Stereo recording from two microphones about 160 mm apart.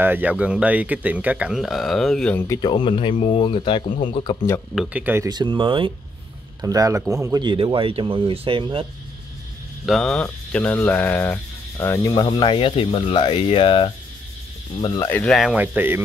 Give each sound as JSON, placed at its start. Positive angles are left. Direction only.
{"t": 0.0, "sound": "speech", "side_deg": -10}
{"t": 2.3, "sound": "speech", "side_deg": 20}
{"t": 2.7, "sound": "speech", "side_deg": 30}
{"t": 4.7, "sound": "speech", "side_deg": -10}
{"t": 5.3, "sound": "a man's voice", "side_deg": -30}
{"t": 9.8, "sound": "speech", "side_deg": 5}
{"t": 12.1, "sound": "speech", "side_deg": 30}
{"t": 15.0, "sound": "speech", "side_deg": 10}